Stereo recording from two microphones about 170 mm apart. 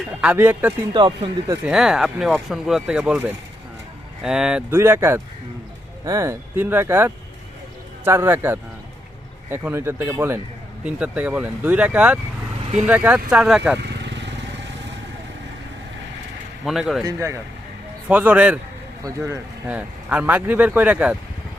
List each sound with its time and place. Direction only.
0.2 s speech: 10° right (ahead or behind)
0.9 s speech: 30° right (ahead or behind)
1.7 s speech: 5° right (ahead or behind)
4.2 s speech: 5° right (ahead or behind)
14.0 s vehicle: 90° right
16.6 s speech: centre (ahead or behind)
17.0 s speech: 20° right (ahead or behind)
19.6 s speech: 10° right (ahead or behind)